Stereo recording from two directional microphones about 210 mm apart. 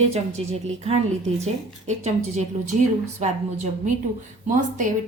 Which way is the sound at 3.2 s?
35° right (ahead or behind).